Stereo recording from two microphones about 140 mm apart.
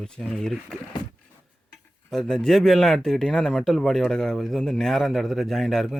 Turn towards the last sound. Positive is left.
turn(degrees=0)  # may be behind; listen again after turning